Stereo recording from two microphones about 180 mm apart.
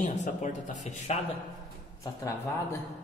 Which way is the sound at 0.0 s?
40° left (ahead or behind).